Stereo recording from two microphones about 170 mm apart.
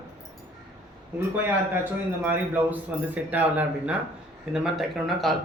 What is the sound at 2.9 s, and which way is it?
Speech, 10° right (ahead or behind).